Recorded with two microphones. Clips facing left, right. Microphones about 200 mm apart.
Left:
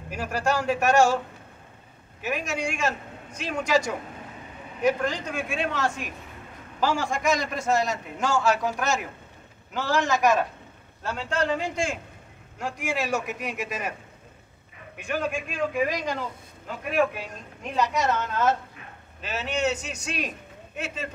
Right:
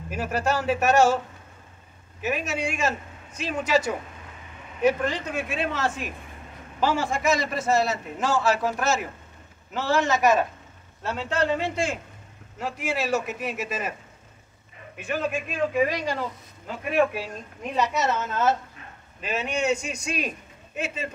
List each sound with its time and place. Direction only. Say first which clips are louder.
0.1 s a man's voice: right 1 dB; 5° right (ahead or behind)
2.2 s a man's voice: right 1 dB; 5° right (ahead or behind)
15.2 s a man's voice: right 4 dB; 5° right (ahead or behind)